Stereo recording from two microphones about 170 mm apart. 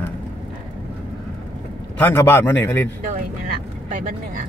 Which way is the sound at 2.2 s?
15° left (ahead or behind).